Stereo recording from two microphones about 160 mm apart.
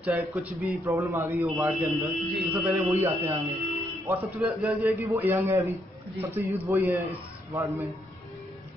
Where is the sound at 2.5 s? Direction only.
15° right (ahead or behind).